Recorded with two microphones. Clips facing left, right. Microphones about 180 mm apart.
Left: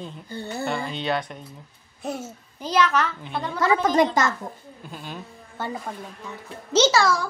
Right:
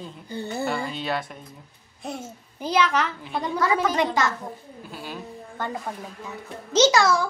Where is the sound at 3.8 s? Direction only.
40° left (ahead or behind).